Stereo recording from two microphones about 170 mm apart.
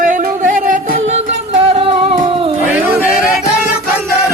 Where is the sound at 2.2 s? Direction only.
30° right (ahead or behind).